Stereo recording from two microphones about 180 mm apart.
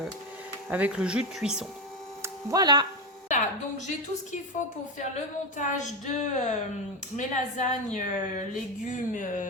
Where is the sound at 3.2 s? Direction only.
40° left (ahead or behind).